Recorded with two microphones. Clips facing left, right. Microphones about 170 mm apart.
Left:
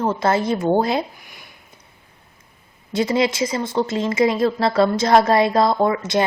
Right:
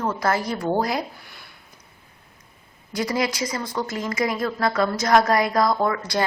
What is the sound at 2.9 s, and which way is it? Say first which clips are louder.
Speech: left 5 dB; 25° left (ahead or behind).